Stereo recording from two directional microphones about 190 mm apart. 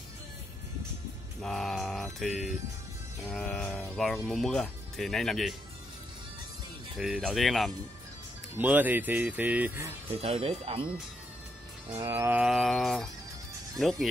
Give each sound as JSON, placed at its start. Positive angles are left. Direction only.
{"t": 1.4, "sound": "speech", "side_deg": 0}
{"t": 7.0, "sound": "speech", "side_deg": 0}
{"t": 10.2, "sound": "speech", "side_deg": -30}
{"t": 12.0, "sound": "speech", "side_deg": -15}